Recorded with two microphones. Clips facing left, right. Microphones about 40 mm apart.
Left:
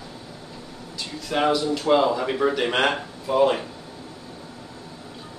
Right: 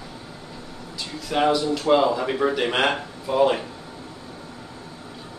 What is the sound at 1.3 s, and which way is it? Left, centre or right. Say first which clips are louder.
Speech: right 1 dB; centre.